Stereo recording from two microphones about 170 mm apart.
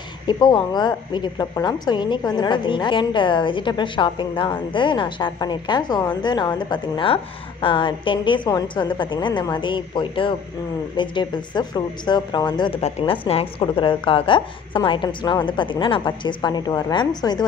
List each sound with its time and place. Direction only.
0.3 s a woman's voice: 25° left (ahead or behind)